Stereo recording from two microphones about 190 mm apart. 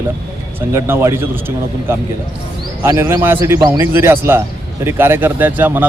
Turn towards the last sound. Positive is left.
turn(degrees=-10)  # may be behind; listen again after turning